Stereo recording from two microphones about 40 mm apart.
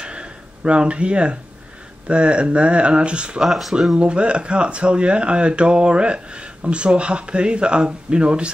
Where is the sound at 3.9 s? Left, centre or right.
Right.